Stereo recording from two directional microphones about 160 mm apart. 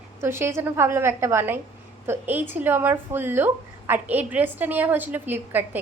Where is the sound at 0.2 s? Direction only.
15° right (ahead or behind).